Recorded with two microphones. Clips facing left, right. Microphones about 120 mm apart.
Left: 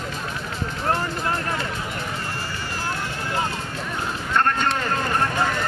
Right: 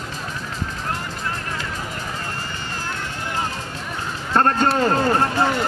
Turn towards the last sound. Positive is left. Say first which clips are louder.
# right 6 dB
turn(degrees=-35)  # may be behind; listen again after turning